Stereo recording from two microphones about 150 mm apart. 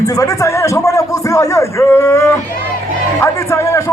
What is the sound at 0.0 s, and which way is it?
Speech, 20° left (ahead or behind).